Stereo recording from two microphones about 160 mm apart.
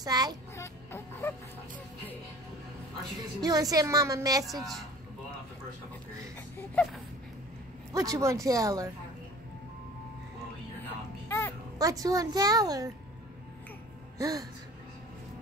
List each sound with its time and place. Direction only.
0.0 s music: 25° right (ahead or behind)
0.6 s music: 15° left (ahead or behind)
3.3 s a woman's voice: 25° right (ahead or behind)
4.6 s a woman's voice: centre (ahead or behind)
6.7 s a sound: 5° left (ahead or behind)
7.9 s a woman's voice: 20° right (ahead or behind)
11.2 s a sound: 15° left (ahead or behind)
11.8 s a woman's voice: 20° right (ahead or behind)
14.1 s music: 20° right (ahead or behind)